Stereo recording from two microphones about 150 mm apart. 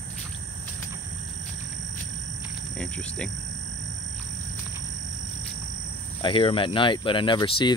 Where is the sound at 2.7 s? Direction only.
5° left (ahead or behind).